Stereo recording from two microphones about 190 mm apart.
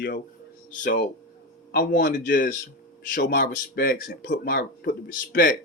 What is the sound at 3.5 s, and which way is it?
Speech, 60° left (ahead or behind).